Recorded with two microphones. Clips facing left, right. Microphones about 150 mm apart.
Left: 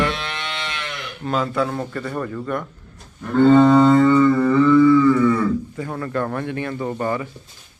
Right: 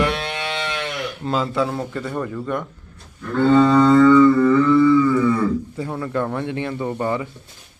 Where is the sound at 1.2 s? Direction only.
25° right (ahead or behind).